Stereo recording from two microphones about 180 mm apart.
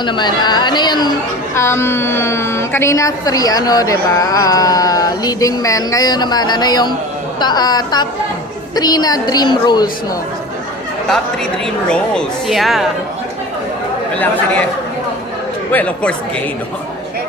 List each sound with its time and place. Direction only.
0.0 s a woman's voice: 25° left (ahead or behind)
11.9 s speech: 5° left (ahead or behind)
15.7 s a woman's voice: 10° left (ahead or behind)